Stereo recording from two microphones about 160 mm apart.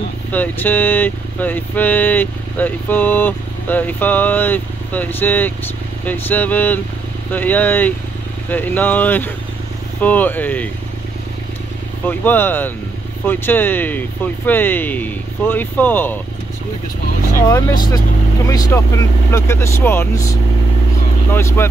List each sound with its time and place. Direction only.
0.3 s speech: 10° left (ahead or behind)
12.1 s speech: 10° left (ahead or behind)
17.4 s speech: 20° left (ahead or behind)